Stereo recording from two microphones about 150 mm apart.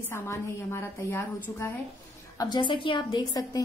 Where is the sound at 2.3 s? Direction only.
25° left (ahead or behind).